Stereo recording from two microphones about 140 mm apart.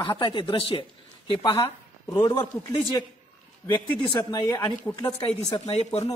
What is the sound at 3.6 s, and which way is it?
Speech, 20° left (ahead or behind).